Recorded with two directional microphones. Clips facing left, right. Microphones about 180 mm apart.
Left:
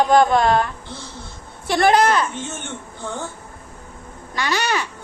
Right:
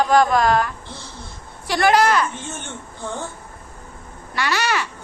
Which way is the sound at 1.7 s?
25° left (ahead or behind).